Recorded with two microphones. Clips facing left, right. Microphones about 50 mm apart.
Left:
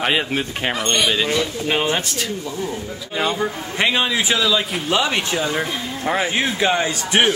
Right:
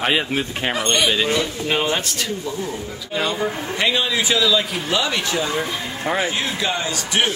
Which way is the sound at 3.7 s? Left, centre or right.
Left.